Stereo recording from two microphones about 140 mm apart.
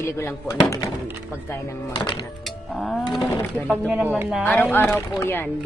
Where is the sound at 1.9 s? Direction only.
35° left (ahead or behind).